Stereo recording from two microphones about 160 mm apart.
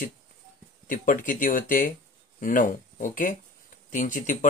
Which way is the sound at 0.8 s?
55° left (ahead or behind).